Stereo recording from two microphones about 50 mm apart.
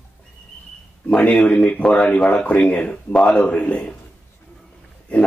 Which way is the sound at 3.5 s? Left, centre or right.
Left.